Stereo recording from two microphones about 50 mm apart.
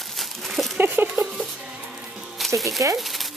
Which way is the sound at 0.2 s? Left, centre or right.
Centre.